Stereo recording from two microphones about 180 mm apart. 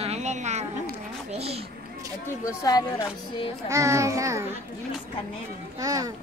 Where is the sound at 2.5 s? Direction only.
20° left (ahead or behind).